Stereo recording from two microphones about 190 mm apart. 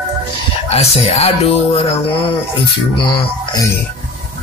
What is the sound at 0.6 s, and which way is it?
Speech, 35° left (ahead or behind).